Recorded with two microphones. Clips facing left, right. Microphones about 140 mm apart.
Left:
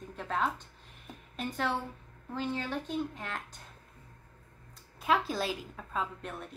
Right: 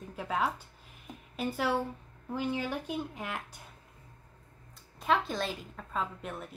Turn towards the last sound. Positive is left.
turn(degrees=0)  # may be behind; listen again after turning